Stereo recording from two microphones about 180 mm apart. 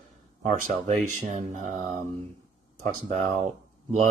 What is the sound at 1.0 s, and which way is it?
Speech, 40° right (ahead or behind).